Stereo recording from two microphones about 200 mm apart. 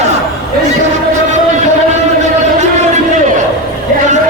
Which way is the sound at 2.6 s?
35° right (ahead or behind).